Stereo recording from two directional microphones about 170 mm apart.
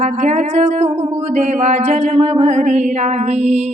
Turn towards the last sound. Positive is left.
turn(degrees=-40)  # may be behind; listen again after turning